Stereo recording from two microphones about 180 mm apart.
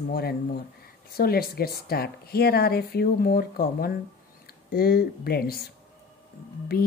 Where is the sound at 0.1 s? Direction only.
60° left (ahead or behind).